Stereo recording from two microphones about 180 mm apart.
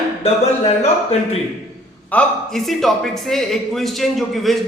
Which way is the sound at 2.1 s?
5° left (ahead or behind).